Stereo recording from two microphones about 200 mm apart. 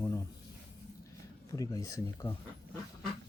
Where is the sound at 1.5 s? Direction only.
15° left (ahead or behind).